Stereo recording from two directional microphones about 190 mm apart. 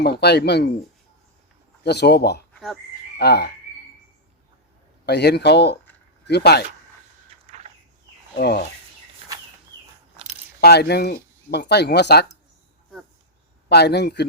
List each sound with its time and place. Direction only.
0.0 s speech: 60° left (ahead or behind)
1.8 s speech: 60° left (ahead or behind)
5.0 s speech: 60° left (ahead or behind)
8.4 s speech: 55° left (ahead or behind)
9.2 s a sound: 30° right (ahead or behind)
10.6 s speech: 60° left (ahead or behind)
13.7 s speech: 60° left (ahead or behind)